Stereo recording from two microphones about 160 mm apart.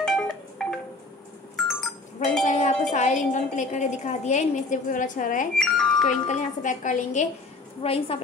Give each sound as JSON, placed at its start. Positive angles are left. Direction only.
{"t": 0.0, "sound": "wind chime", "side_deg": 5}
{"t": 1.6, "sound": "sheep", "side_deg": 0}
{"t": 2.2, "sound": "cowbell", "side_deg": 55}
{"t": 2.9, "sound": "a woman's voice", "side_deg": 50}
{"t": 5.6, "sound": "music", "side_deg": 5}
{"t": 6.0, "sound": "a woman's voice", "side_deg": 50}
{"t": 7.8, "sound": "a woman's voice", "side_deg": 35}